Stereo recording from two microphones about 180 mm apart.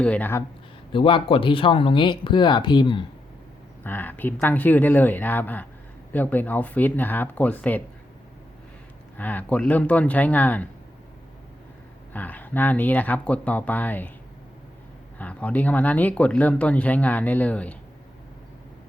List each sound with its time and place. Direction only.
0.0 s speech: 10° left (ahead or behind)
0.9 s speech: 30° left (ahead or behind)
3.8 s speech: 10° left (ahead or behind)
9.1 s speech: 10° left (ahead or behind)
12.1 s speech: 10° left (ahead or behind)
15.2 s speech: 5° left (ahead or behind)